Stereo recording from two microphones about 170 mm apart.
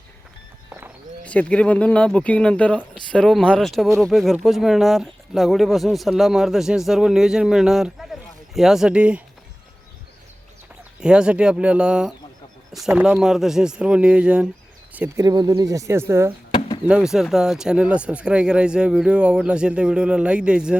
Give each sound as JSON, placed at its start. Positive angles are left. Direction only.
{"t": 0.7, "sound": "walk", "side_deg": -10}
{"t": 1.2, "sound": "speech", "side_deg": 10}
{"t": 11.0, "sound": "speech", "side_deg": -5}
{"t": 16.5, "sound": "a sound", "side_deg": 30}
{"t": 16.9, "sound": "speech", "side_deg": -5}